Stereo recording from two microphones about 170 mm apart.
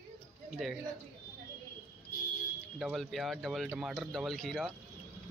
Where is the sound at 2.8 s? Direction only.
Centre (ahead or behind).